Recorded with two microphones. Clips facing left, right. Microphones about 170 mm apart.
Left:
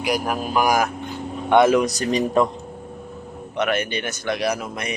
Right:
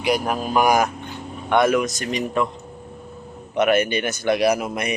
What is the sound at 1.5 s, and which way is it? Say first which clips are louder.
Speech: left 3 dB; 20° left (ahead or behind).